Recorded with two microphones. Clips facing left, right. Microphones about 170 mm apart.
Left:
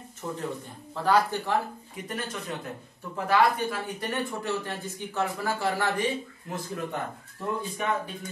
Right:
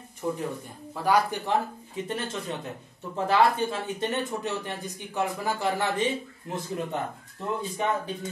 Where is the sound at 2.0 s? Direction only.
25° right (ahead or behind).